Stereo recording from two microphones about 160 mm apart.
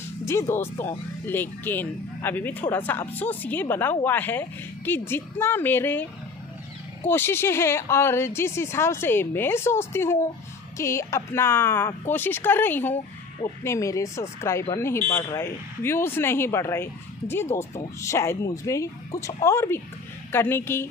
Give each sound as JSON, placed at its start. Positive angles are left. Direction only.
{"t": 0.2, "sound": "speech", "side_deg": 15}
{"t": 7.1, "sound": "speech", "side_deg": 15}